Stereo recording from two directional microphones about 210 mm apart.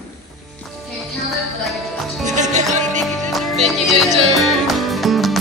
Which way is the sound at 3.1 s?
Centre (ahead or behind).